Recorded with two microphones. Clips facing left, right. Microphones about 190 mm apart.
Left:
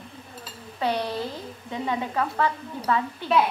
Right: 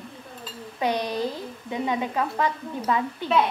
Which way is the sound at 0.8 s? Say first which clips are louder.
Right 1 dB; 15° right (ahead or behind).